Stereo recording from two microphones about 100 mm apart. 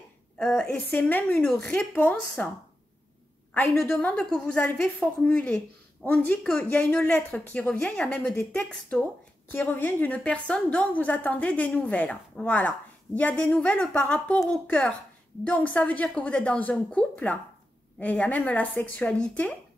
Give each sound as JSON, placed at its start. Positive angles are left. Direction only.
{"t": 0.4, "sound": "a woman's voice", "side_deg": 0}
{"t": 0.8, "sound": "a woman's voice", "side_deg": 20}
{"t": 4.0, "sound": "a woman's voice", "side_deg": 10}